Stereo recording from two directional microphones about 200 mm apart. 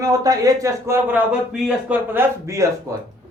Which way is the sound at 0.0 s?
15° right (ahead or behind).